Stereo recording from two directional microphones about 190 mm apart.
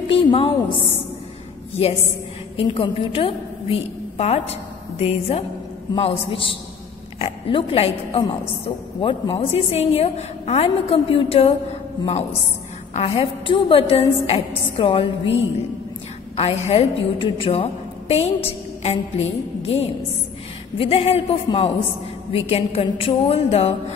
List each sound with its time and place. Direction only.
0.1 s a sound: 30° left (ahead or behind)
2.8 s a woman's voice: 30° left (ahead or behind)
12.9 s a woman's voice: 30° left (ahead or behind)
16.3 s a woman's voice: 30° left (ahead or behind)
19.1 s music: 90° left
20.7 s a woman's voice: 30° left (ahead or behind)